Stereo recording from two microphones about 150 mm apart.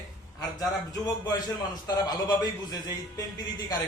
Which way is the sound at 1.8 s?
25° left (ahead or behind).